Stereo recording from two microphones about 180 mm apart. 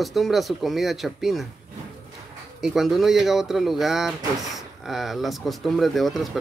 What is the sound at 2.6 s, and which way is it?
Speech, centre (ahead or behind).